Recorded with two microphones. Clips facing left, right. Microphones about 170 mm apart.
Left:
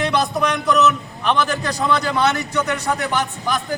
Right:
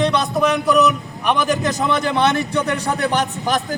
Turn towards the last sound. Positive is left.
turn(degrees=-35)  # may be behind; listen again after turning